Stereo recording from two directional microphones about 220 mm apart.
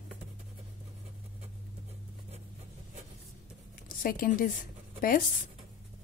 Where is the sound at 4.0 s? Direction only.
40° left (ahead or behind).